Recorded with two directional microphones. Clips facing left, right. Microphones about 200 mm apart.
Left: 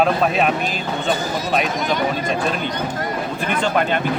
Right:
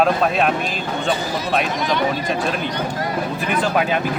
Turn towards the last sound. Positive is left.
turn(degrees=-5)  # may be behind; listen again after turning